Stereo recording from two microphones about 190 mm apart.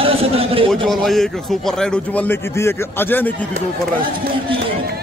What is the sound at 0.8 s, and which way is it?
A man's voice, centre (ahead or behind).